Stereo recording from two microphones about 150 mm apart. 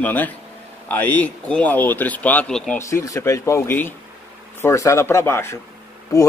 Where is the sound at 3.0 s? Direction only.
20° left (ahead or behind).